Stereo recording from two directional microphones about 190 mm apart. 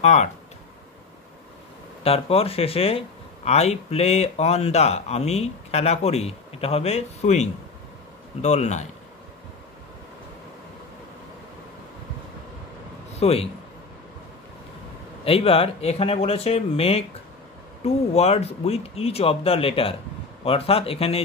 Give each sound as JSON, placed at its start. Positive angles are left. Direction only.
{"t": 0.0, "sound": "speech", "side_deg": 35}
{"t": 2.0, "sound": "speech", "side_deg": 30}
{"t": 13.2, "sound": "speech", "side_deg": 30}
{"t": 15.2, "sound": "speech", "side_deg": 30}